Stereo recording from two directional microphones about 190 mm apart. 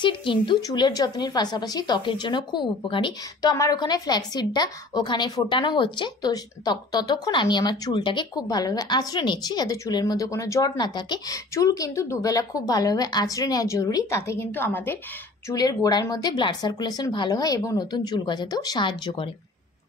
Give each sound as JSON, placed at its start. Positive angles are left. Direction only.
{"t": 0.0, "sound": "speech", "side_deg": 25}